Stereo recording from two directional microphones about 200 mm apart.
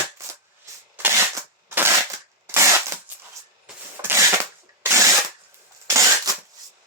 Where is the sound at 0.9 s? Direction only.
10° right (ahead or behind).